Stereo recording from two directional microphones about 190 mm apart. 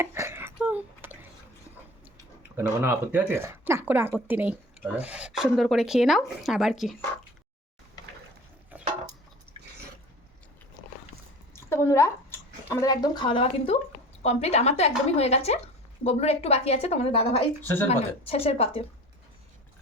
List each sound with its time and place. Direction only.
0.0 s a sound: 15° right (ahead or behind)
2.6 s speech: 10° right (ahead or behind)
11.7 s a woman's voice: 15° left (ahead or behind); by 18.9 s 30° left (ahead or behind)